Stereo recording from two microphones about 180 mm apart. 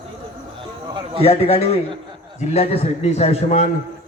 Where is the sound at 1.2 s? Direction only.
35° left (ahead or behind).